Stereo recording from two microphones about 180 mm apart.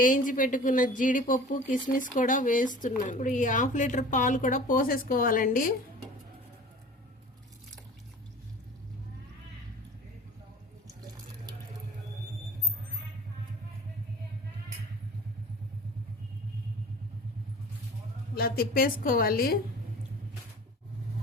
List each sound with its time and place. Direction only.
0.0 s speech: 50° left (ahead or behind)
18.3 s a woman's voice: 60° left (ahead or behind)